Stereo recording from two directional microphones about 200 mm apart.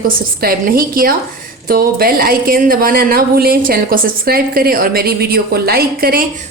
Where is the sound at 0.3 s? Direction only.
45° right (ahead or behind).